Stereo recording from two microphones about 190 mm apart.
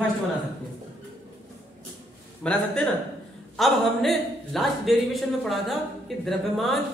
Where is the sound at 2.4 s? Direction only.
5° left (ahead or behind).